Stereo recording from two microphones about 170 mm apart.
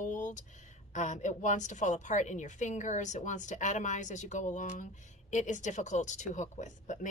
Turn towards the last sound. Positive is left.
turn(degrees=45)  # may be behind; listen again after turning